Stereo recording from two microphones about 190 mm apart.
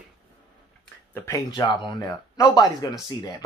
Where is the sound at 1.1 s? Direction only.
15° left (ahead or behind).